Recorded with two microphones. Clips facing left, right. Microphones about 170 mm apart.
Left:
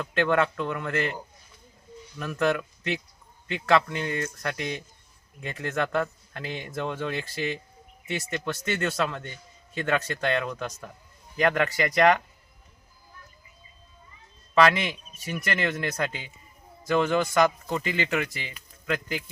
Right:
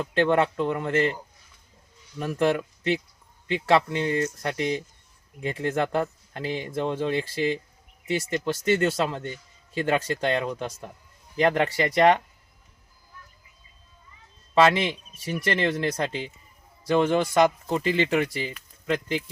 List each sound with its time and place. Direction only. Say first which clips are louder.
0.0 s speech: right 2 dB; 30° right (ahead or behind)
2.1 s speech: right 2 dB; 25° right (ahead or behind)
14.5 s speech: right 2 dB; 25° right (ahead or behind)